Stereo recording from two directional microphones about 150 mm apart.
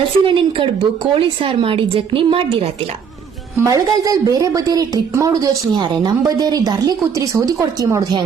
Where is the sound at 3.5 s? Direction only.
20° right (ahead or behind).